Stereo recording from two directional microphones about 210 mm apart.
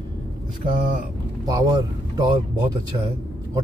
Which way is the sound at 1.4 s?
15° right (ahead or behind).